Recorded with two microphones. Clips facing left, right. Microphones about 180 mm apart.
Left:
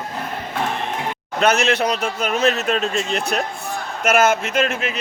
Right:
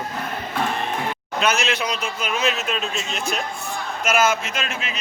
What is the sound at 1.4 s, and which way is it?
A man's voice, 60° left (ahead or behind).